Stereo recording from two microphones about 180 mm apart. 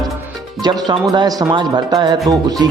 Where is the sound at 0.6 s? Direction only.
20° right (ahead or behind).